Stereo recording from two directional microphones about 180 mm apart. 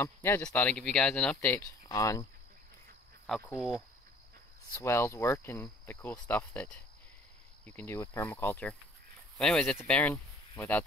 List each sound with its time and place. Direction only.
0.0 s speech: 15° left (ahead or behind)
3.3 s speech: 5° left (ahead or behind)
4.7 s speech: 15° left (ahead or behind)